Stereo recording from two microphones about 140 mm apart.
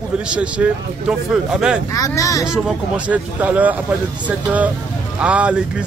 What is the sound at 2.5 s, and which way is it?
Speech, 5° right (ahead or behind).